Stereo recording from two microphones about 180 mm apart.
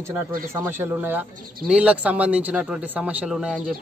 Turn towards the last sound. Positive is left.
turn(degrees=-5)  # may be behind; listen again after turning